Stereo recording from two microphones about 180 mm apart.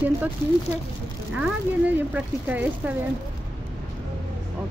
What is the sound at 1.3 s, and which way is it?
A woman's voice, 5° right (ahead or behind).